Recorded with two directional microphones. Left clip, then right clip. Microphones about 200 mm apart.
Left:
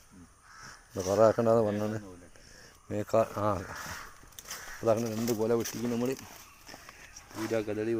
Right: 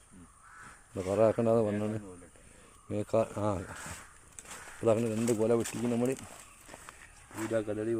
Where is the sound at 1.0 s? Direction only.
5° right (ahead or behind).